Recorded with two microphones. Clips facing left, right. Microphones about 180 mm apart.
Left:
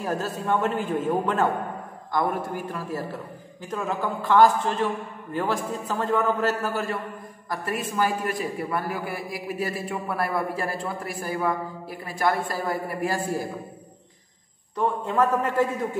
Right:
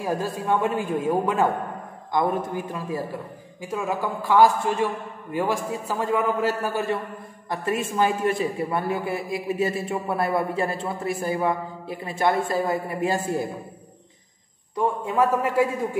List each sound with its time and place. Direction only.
0.0 s a man's voice: 10° right (ahead or behind)
14.8 s a man's voice: 10° right (ahead or behind)